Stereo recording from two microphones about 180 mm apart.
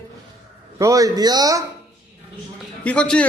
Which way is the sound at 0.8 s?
20° right (ahead or behind).